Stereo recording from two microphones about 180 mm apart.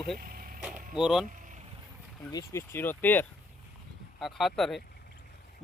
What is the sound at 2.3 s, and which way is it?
Speech, 20° left (ahead or behind).